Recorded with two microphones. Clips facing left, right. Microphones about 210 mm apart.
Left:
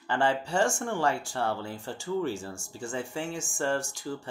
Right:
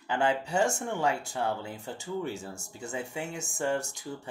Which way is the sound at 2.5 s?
20° right (ahead or behind).